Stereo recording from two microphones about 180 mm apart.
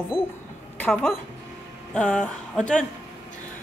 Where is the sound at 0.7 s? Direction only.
10° left (ahead or behind).